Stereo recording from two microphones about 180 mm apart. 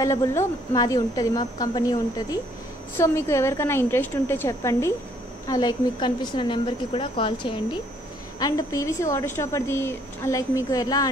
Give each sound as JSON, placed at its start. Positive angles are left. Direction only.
{"t": 0.0, "sound": "a woman's voice", "side_deg": 15}